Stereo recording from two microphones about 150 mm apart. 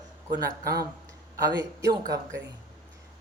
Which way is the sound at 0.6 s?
90° right.